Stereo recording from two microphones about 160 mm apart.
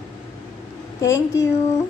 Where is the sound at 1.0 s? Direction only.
20° left (ahead or behind).